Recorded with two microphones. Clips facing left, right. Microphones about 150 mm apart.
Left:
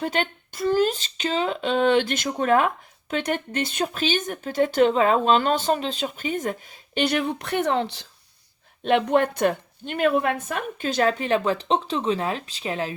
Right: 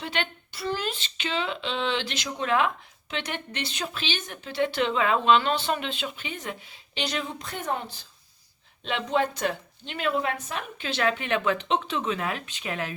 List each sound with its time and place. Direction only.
0.0 s speech: 45° left (ahead or behind); by 8.0 s 85° left
8.8 s a woman's voice: 55° left (ahead or behind); by 12.9 s 30° left (ahead or behind)